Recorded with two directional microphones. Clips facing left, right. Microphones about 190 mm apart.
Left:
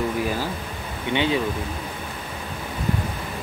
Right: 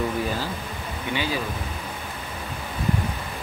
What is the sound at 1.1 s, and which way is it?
Speech, 25° left (ahead or behind).